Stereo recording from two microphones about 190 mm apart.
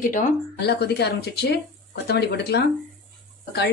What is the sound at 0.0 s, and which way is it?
Speech, 45° left (ahead or behind).